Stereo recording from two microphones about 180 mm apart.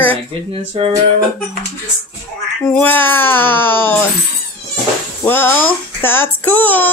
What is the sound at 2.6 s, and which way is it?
Music, 10° left (ahead or behind).